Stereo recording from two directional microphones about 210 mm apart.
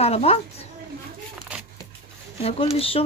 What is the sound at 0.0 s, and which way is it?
Speech, 30° left (ahead or behind).